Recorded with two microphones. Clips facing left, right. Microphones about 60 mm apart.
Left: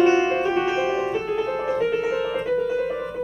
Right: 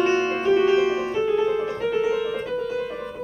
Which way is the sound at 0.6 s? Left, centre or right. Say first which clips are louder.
Right 3 dB; left.